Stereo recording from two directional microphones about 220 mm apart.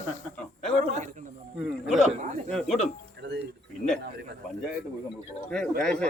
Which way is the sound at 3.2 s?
50° right (ahead or behind).